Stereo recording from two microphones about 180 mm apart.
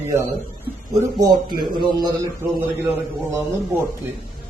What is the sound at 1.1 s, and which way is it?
Speech, 20° right (ahead or behind).